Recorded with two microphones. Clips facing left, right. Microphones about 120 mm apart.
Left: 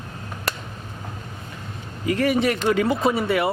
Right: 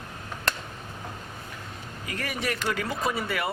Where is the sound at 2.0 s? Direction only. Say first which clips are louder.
Left 12 dB; 25° left (ahead or behind).